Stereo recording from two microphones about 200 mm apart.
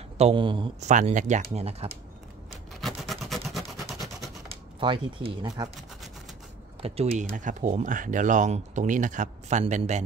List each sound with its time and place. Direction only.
0.2 s speech: 25° right (ahead or behind)
0.8 s speech: 35° right (ahead or behind)
2.7 s a sound: centre (ahead or behind)
4.7 s speech: 25° right (ahead or behind)
6.8 s speech: 30° right (ahead or behind)